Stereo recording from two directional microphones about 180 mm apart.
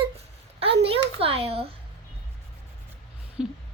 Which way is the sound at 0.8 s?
30° right (ahead or behind).